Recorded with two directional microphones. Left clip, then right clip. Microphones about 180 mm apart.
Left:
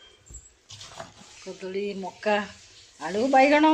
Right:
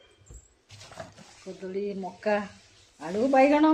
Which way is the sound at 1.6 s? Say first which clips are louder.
Left 2 dB; centre (ahead or behind).